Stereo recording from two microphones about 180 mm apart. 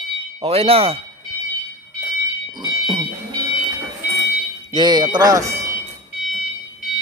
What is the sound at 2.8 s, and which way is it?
Smoke detector, 25° right (ahead or behind).